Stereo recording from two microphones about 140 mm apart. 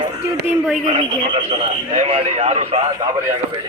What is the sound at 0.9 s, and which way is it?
A man's voice, 35° right (ahead or behind).